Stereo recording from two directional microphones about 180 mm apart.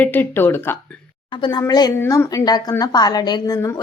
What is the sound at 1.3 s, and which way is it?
A woman's voice, 25° left (ahead or behind).